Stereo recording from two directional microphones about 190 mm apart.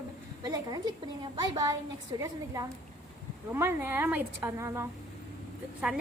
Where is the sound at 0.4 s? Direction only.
20° right (ahead or behind).